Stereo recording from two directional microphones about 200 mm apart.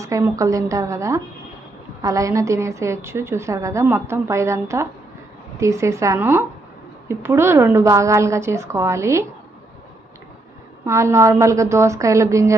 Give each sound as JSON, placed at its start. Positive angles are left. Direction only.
{"t": 0.0, "sound": "a woman's voice", "side_deg": -15}
{"t": 10.8, "sound": "a woman's voice", "side_deg": -15}